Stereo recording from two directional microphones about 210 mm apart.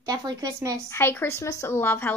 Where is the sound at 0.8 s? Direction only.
10° left (ahead or behind).